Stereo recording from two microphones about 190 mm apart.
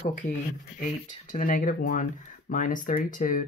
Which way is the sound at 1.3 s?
45° left (ahead or behind).